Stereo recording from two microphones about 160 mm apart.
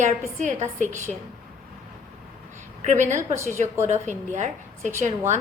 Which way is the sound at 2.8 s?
45° right (ahead or behind).